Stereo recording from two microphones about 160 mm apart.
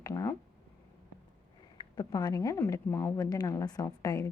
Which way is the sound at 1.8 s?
25° left (ahead or behind).